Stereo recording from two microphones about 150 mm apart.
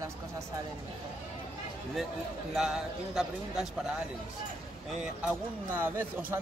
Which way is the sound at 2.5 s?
5° right (ahead or behind).